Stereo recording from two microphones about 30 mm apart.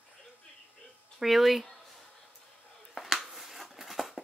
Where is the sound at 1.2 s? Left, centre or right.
Centre.